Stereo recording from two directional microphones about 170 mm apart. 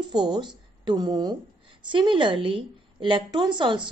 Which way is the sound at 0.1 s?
25° right (ahead or behind).